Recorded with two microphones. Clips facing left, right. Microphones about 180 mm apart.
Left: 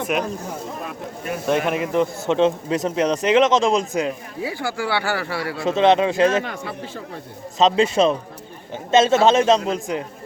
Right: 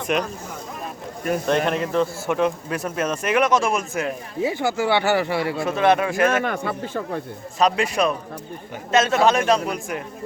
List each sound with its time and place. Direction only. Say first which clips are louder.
0.1 s speech: right 1 dB; 5° left (ahead or behind)
1.5 s a man's voice: left 3 dB; 10° left (ahead or behind)
4.4 s speech: right 7 dB; 20° right (ahead or behind)
5.6 s a man's voice: left 4 dB; 20° left (ahead or behind)
6.4 s speech: right 5 dB; 55° right (ahead or behind)
7.6 s a man's voice: left 4 dB; 25° left (ahead or behind)